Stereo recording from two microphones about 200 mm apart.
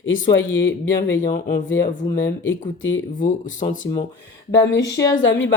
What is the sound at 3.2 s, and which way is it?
Speech, 40° left (ahead or behind).